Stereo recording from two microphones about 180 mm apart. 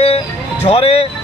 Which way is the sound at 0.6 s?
30° left (ahead or behind).